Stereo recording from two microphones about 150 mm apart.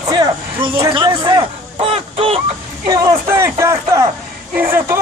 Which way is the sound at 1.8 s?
40° right (ahead or behind).